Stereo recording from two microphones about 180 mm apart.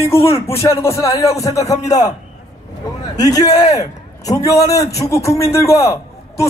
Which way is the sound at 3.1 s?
20° left (ahead or behind).